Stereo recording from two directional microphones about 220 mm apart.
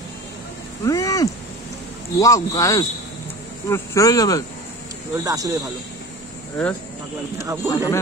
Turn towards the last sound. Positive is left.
turn(degrees=-15)  # may be behind; listen again after turning